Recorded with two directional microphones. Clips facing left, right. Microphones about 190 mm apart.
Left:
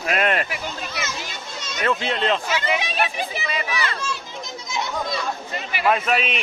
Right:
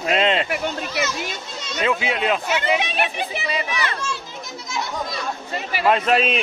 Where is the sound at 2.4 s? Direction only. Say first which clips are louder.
Right 3 dB; 60° right (ahead or behind).